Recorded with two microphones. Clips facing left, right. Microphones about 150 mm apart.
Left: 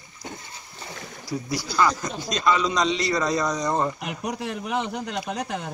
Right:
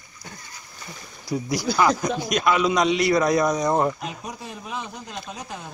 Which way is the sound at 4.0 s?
70° left (ahead or behind).